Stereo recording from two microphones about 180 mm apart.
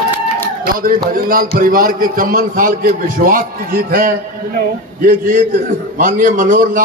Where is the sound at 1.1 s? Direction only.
50° right (ahead or behind).